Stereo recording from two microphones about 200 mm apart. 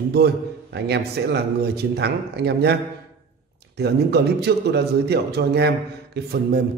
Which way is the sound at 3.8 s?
55° right (ahead or behind).